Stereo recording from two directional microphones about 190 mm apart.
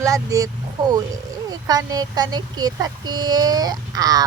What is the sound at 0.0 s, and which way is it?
Speech, 15° right (ahead or behind).